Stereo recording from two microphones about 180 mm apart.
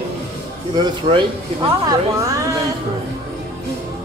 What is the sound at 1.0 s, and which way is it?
Speech, 30° right (ahead or behind).